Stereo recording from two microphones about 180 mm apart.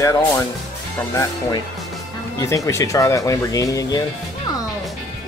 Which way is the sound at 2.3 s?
20° left (ahead or behind).